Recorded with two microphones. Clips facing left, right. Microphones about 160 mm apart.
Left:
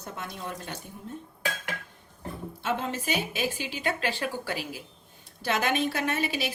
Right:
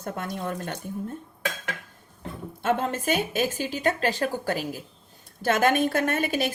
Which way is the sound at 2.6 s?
50° right (ahead or behind).